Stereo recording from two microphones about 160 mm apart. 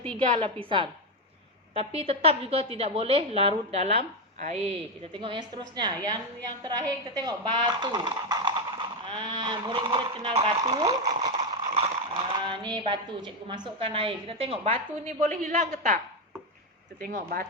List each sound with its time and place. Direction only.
0.7 s speech: 30° right (ahead or behind)
5.1 s a woman's voice: 30° right (ahead or behind)
15.2 s a woman's voice: 55° right (ahead or behind)
17.0 s a woman's voice: 65° right (ahead or behind)